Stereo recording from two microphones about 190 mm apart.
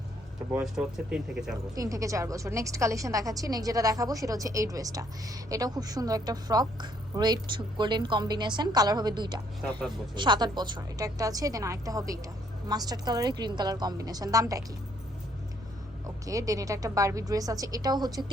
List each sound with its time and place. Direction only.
0.5 s speech: 5° right (ahead or behind)
1.7 s a woman's voice: 20° right (ahead or behind)
16.0 s a woman's voice: 15° right (ahead or behind)